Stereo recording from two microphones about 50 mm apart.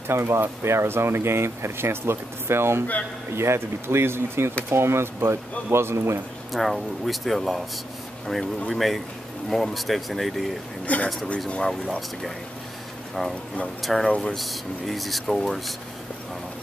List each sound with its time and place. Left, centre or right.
0.1 s speech: right
6.5 s speech: centre
8.6 s speech: centre
10.9 s speech: left
11.3 s speech: centre
13.2 s speech: centre
14.0 s speech: left
14.3 s speech: centre